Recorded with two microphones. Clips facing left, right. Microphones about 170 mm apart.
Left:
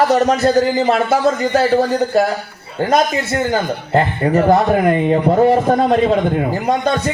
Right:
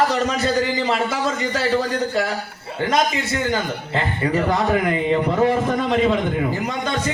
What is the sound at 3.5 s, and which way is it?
A man's voice, 50° left (ahead or behind).